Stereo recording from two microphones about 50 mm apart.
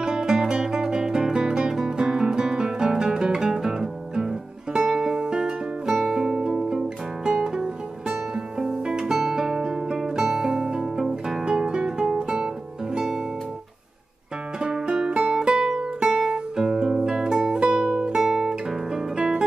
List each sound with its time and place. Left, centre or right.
0.0 s music: centre
14.6 s music: centre